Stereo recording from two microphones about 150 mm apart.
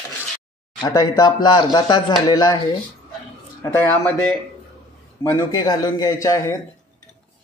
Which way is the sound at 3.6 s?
15° left (ahead or behind).